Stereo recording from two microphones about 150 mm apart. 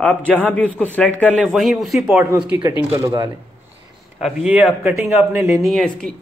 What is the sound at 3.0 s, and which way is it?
Speech, 20° right (ahead or behind).